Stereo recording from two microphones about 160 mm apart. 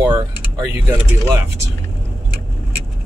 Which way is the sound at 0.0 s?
15° right (ahead or behind).